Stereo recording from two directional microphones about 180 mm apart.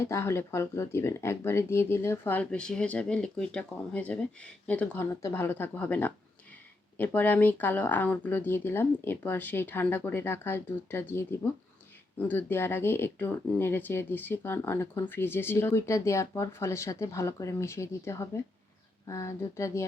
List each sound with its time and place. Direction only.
0.0 s speech: 15° left (ahead or behind)